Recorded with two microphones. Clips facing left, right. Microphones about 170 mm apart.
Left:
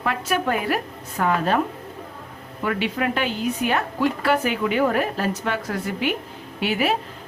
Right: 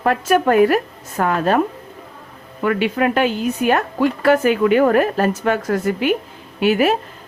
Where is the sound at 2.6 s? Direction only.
50° right (ahead or behind).